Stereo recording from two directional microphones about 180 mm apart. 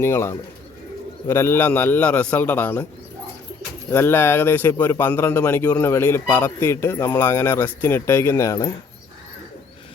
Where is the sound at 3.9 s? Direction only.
15° left (ahead or behind).